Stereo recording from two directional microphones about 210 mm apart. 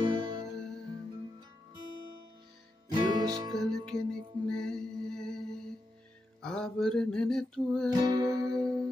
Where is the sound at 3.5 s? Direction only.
5° left (ahead or behind).